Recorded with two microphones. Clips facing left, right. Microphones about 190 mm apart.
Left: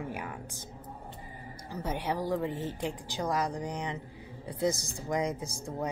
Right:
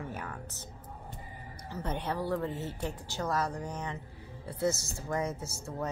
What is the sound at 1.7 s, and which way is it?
A woman's voice, 10° left (ahead or behind).